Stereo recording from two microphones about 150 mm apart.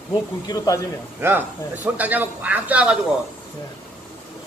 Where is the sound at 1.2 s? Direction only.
15° right (ahead or behind).